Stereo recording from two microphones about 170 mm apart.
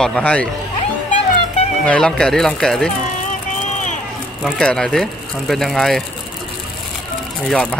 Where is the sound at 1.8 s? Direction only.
5° left (ahead or behind).